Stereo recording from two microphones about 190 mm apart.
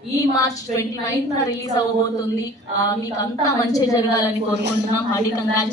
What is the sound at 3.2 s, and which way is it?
A woman's voice, 20° left (ahead or behind).